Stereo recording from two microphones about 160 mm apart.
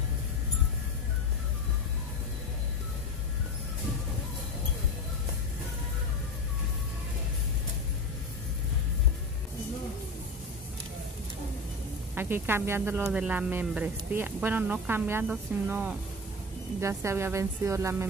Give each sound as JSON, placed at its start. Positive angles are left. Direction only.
{"t": 12.2, "sound": "speech", "side_deg": -15}